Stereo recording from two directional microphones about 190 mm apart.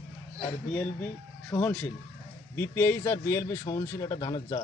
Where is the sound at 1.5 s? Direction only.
10° left (ahead or behind).